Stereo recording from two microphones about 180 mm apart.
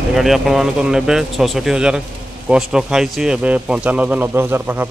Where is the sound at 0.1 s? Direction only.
Centre (ahead or behind).